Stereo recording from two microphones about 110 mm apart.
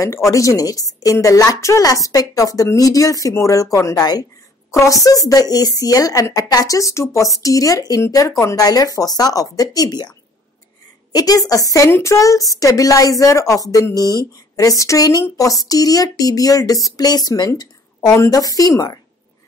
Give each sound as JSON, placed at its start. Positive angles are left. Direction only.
{"t": 0.0, "sound": "a woman's voice", "side_deg": 30}